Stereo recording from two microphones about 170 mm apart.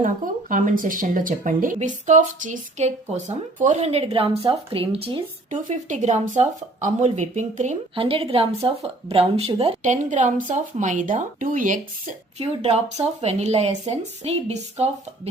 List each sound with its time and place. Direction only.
0.0 s speech: 50° right (ahead or behind); by 5.5 s 35° right (ahead or behind)
5.6 s speech: 45° right (ahead or behind)
7.9 s speech: 35° right (ahead or behind); by 11.8 s 55° right (ahead or behind)
12.4 s speech: 40° right (ahead or behind)